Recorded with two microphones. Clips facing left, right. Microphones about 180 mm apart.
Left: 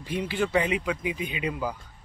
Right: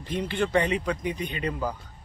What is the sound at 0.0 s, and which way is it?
Speech, 10° left (ahead or behind).